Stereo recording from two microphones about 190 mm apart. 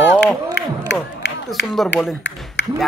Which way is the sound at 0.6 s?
60° left (ahead or behind).